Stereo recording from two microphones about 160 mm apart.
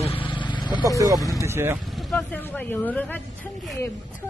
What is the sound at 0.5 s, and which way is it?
Vehicle, 30° left (ahead or behind).